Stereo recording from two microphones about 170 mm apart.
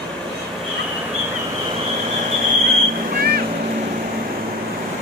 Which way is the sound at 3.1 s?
65° right (ahead or behind).